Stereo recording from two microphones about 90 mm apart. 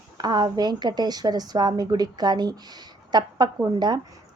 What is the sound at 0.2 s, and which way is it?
A woman's voice, 50° right (ahead or behind).